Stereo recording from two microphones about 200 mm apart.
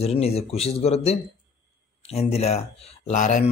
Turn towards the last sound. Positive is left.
turn(degrees=40)  # may be behind; listen again after turning